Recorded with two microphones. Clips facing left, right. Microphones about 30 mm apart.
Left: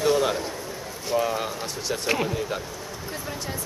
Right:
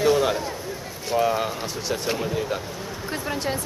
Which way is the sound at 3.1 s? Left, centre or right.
Right.